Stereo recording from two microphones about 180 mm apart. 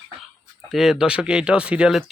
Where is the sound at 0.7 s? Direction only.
Centre (ahead or behind).